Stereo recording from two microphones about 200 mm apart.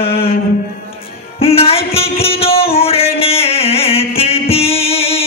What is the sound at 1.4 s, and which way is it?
Music, 30° left (ahead or behind).